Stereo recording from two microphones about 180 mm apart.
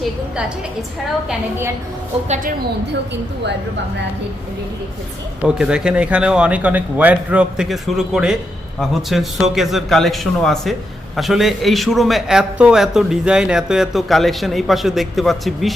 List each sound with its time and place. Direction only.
1.3 s a woman's voice: 15° right (ahead or behind)
2.2 s a woman's voice: 40° right (ahead or behind)
5.4 s a man's voice: 5° right (ahead or behind)